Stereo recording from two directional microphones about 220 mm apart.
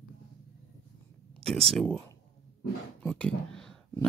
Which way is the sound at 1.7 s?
Centre (ahead or behind).